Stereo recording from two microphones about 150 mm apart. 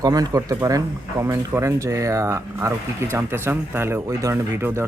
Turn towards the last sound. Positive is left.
turn(degrees=-15)  # may be behind; listen again after turning